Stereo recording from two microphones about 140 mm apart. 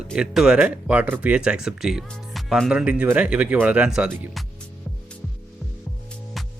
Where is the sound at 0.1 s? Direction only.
5° right (ahead or behind).